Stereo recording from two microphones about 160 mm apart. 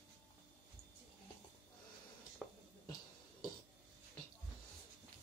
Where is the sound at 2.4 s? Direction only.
Centre (ahead or behind).